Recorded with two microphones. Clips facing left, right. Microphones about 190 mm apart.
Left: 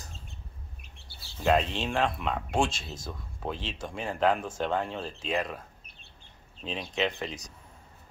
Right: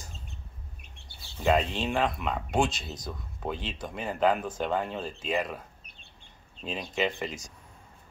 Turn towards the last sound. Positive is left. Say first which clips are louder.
# right 1 dB
turn(degrees=0)  # may be behind; listen again after turning